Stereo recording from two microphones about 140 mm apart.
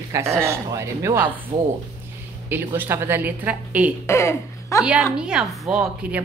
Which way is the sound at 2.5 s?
15° right (ahead or behind).